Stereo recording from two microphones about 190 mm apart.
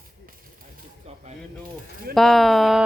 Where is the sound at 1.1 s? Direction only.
35° right (ahead or behind).